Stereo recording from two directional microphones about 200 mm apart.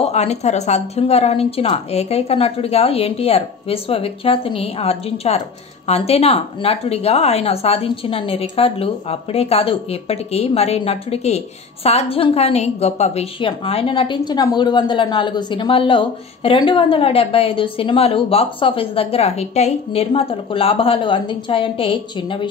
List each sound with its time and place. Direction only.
0.0 s a woman's voice: 35° left (ahead or behind)